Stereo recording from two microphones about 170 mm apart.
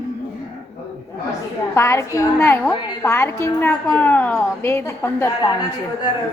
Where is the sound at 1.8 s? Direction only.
15° left (ahead or behind).